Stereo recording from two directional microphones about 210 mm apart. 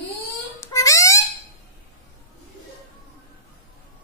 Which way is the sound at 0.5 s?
15° left (ahead or behind).